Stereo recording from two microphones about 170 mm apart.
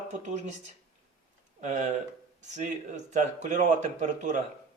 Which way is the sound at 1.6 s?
45° right (ahead or behind).